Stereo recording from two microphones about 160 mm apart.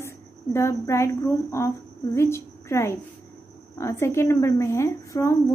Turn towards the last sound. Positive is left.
turn(degrees=20)  # may be behind; listen again after turning